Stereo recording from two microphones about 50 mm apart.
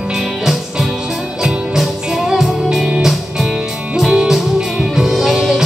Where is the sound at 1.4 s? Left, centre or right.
Centre.